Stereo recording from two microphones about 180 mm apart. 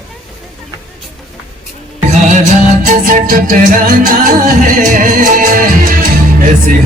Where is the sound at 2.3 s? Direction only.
45° right (ahead or behind).